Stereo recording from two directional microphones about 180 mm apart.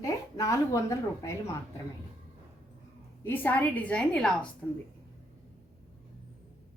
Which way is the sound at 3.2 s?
10° left (ahead or behind).